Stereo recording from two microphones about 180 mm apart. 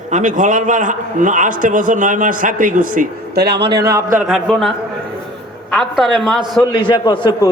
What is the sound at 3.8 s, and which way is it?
Speech, 15° right (ahead or behind).